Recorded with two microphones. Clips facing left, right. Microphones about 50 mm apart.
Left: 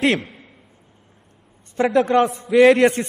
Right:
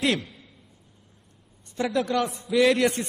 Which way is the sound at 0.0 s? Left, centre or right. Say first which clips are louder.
Left 6 dB; left.